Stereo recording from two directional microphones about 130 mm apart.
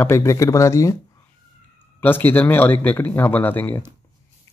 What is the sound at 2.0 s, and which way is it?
Speech, 15° left (ahead or behind).